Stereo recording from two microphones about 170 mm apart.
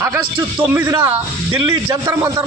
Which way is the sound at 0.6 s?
15° right (ahead or behind).